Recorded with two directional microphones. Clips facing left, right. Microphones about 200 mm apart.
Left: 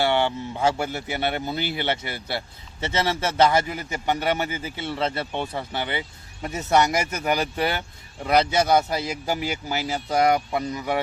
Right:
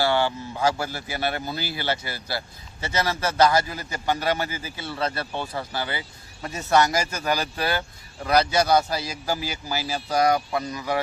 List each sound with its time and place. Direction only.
0.0 s a man's voice: 20° left (ahead or behind)